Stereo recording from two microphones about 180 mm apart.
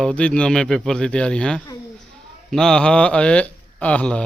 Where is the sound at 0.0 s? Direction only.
5° left (ahead or behind).